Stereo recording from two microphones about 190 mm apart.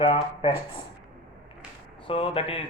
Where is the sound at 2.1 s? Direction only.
30° left (ahead or behind).